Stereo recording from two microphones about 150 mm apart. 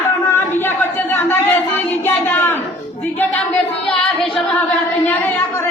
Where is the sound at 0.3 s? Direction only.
15° left (ahead or behind).